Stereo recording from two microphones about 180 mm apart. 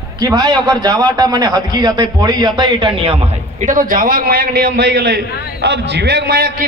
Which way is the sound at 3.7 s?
50° right (ahead or behind).